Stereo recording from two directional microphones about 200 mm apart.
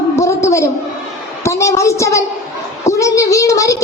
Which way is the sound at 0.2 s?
15° left (ahead or behind).